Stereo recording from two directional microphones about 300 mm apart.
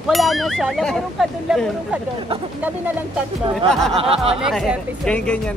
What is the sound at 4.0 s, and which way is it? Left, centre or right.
Speech, centre.